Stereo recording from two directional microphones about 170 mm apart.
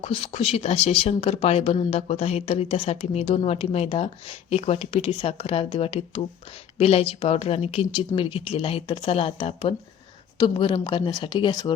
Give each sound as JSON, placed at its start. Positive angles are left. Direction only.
{"t": 0.0, "sound": "speech", "side_deg": 35}